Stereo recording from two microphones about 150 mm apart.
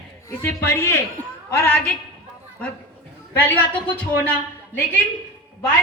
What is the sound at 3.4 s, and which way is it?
Speech, 15° left (ahead or behind).